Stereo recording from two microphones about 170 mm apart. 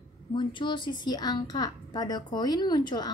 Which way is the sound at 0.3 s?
30° left (ahead or behind).